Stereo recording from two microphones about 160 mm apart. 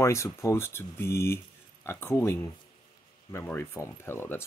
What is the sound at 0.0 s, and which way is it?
Speech, 20° left (ahead or behind).